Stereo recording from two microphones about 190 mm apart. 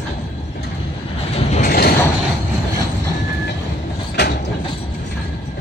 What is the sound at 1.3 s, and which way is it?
Train, 35° left (ahead or behind).